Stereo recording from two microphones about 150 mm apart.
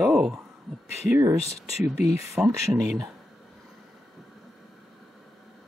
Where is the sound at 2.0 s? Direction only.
45° left (ahead or behind).